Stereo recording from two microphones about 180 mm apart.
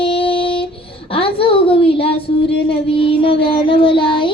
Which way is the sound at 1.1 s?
30° left (ahead or behind).